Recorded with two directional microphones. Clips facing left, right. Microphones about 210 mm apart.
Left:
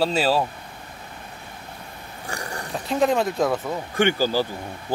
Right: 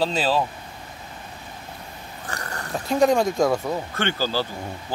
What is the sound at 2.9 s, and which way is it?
Speech, centre (ahead or behind).